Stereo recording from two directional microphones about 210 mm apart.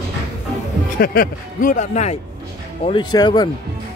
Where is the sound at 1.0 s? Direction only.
45° left (ahead or behind).